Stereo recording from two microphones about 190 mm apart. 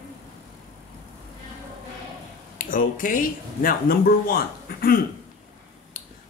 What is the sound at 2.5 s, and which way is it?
Speech, 45° left (ahead or behind).